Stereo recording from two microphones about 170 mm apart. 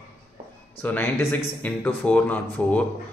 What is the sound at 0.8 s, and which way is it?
Speech, 10° left (ahead or behind).